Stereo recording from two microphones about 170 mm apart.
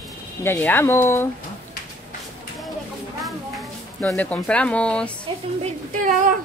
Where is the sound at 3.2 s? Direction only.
Centre (ahead or behind).